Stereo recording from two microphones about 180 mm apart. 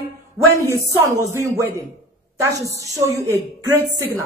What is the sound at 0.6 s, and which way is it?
Speech, 15° right (ahead or behind).